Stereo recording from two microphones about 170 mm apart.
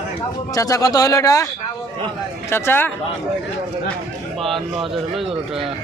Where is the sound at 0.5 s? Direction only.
20° left (ahead or behind).